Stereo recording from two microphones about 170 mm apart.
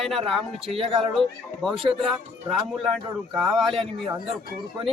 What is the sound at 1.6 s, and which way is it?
Speech, centre (ahead or behind).